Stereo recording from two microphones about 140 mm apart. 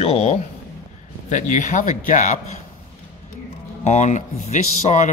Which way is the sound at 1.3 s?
60° left (ahead or behind).